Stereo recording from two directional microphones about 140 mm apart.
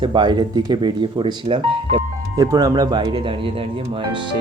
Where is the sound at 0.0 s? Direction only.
35° right (ahead or behind).